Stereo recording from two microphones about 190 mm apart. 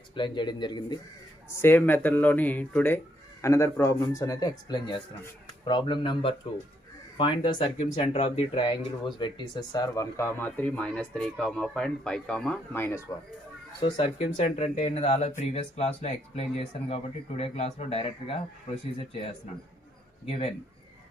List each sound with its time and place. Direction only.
0.1 s speech: 25° left (ahead or behind)
1.5 s speech: 10° left (ahead or behind)
13.7 s speech: 25° left (ahead or behind)
20.2 s speech: 30° left (ahead or behind)